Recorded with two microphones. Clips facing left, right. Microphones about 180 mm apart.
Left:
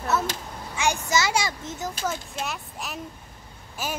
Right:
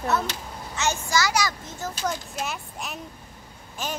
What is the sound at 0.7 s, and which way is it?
A child's voice, 15° left (ahead or behind).